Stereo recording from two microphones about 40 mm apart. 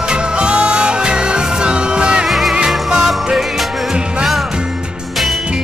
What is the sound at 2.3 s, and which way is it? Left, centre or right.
Music, centre.